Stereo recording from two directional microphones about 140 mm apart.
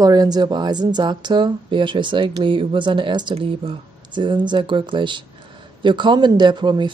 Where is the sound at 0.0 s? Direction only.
30° right (ahead or behind).